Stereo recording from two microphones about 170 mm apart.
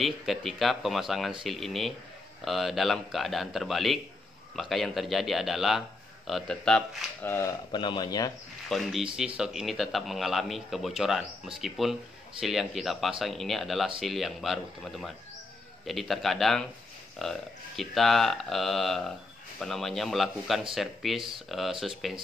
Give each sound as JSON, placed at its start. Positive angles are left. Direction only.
{"t": 0.0, "sound": "speech", "side_deg": 0}
{"t": 7.3, "sound": "speech", "side_deg": 25}
{"t": 8.6, "sound": "speech", "side_deg": 0}